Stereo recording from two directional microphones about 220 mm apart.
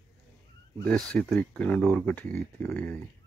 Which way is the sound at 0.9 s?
5° left (ahead or behind).